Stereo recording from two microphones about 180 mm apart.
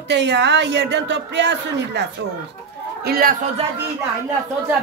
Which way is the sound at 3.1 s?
55° right (ahead or behind).